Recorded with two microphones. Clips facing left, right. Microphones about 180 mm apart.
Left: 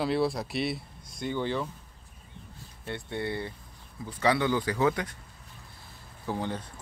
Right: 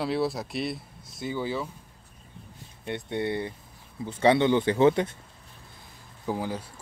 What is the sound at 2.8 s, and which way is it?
Speech, 20° right (ahead or behind).